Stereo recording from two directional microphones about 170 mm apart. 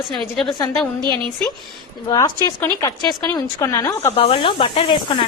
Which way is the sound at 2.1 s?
20° left (ahead or behind).